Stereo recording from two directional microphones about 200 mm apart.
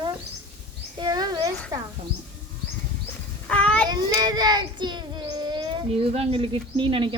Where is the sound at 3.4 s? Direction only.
5° left (ahead or behind).